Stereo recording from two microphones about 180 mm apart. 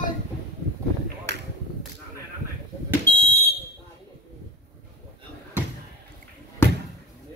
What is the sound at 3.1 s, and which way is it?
Fire alarm, 70° right (ahead or behind).